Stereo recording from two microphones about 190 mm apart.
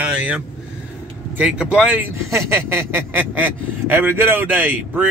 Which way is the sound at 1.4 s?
5° right (ahead or behind).